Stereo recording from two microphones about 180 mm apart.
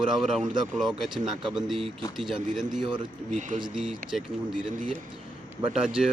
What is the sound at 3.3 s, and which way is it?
Speech, 45° right (ahead or behind).